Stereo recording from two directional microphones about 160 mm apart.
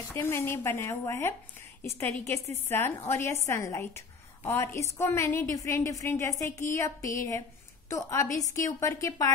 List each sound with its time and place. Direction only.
0.1 s a woman's voice: 15° left (ahead or behind)